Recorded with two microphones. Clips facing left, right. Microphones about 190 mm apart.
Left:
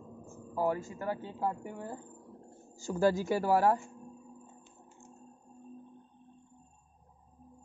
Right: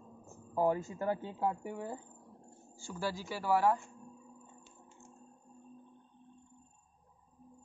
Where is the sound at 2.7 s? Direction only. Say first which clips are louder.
Left 11 dB; 45° left (ahead or behind).